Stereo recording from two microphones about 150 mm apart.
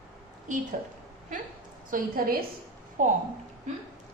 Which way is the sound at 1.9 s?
75° right (ahead or behind).